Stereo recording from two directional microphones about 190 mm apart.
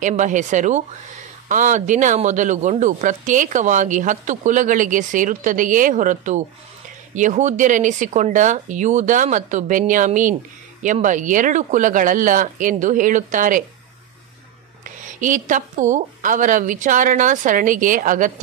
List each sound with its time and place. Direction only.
0.0 s a woman's voice: 40° right (ahead or behind)
15.0 s a woman's voice: 40° right (ahead or behind)